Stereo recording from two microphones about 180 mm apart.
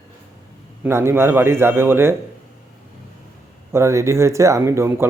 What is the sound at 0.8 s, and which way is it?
Speech, 15° right (ahead or behind).